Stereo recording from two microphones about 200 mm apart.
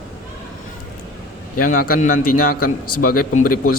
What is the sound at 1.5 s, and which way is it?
A man's voice, 45° left (ahead or behind).